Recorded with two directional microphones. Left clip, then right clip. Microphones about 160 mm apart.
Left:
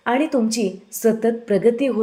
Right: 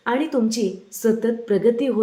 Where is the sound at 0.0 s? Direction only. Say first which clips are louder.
Left 2 dB; 15° left (ahead or behind).